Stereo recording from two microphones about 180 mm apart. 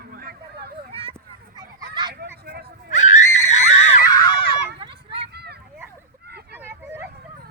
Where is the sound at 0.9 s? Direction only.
30° right (ahead or behind).